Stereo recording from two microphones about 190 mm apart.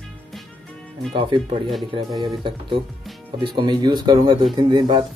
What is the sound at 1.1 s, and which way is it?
Speech, 25° right (ahead or behind).